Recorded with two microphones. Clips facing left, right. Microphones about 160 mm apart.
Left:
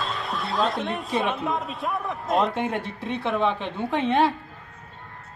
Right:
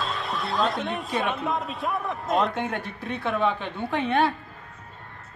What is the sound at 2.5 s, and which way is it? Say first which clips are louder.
A woman's voice: left 2 dB; 25° left (ahead or behind).